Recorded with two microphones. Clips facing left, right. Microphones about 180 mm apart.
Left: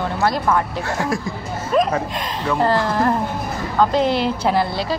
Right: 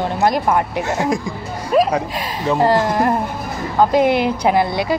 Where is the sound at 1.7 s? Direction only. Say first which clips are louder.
Right 3 dB; 5° right (ahead or behind).